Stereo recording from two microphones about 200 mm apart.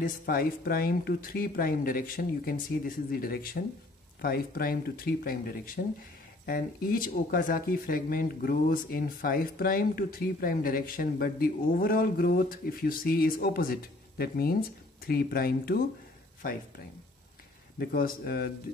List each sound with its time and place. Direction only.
0.0 s speech: 45° left (ahead or behind)
17.7 s speech: 50° left (ahead or behind)